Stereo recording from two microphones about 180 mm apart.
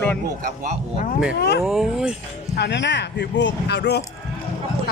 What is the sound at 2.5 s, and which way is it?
Speech, 70° left (ahead or behind).